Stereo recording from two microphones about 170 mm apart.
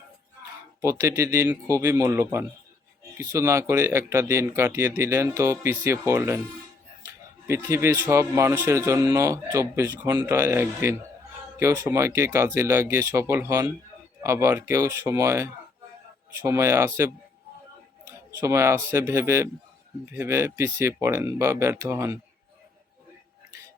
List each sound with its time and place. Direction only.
0.8 s speech: 15° right (ahead or behind)
18.3 s speech: 15° right (ahead or behind)